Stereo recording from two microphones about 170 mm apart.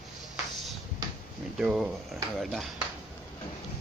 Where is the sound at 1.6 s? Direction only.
5° right (ahead or behind).